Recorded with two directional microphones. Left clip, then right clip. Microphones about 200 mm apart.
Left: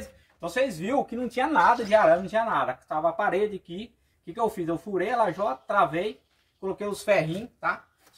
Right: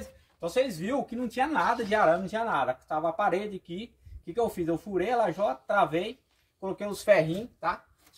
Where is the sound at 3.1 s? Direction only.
15° right (ahead or behind).